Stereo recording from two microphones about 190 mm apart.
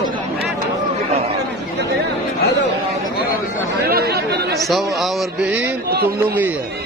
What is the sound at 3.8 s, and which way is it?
Speech, 55° right (ahead or behind).